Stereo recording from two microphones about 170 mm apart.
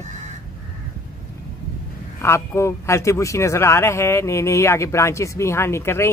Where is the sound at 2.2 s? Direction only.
15° left (ahead or behind).